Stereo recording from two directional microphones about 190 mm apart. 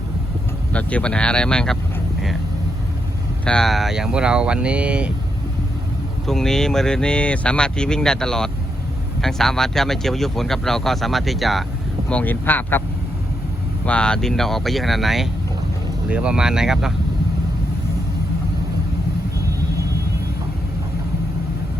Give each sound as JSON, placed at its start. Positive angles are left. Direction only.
{"t": 0.7, "sound": "speech", "side_deg": 5}
{"t": 3.4, "sound": "speech", "side_deg": 5}
{"t": 6.2, "sound": "speech", "side_deg": 0}
{"t": 13.8, "sound": "speech", "side_deg": 5}